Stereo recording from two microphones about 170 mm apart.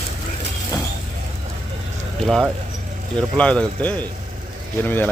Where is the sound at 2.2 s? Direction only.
Centre (ahead or behind).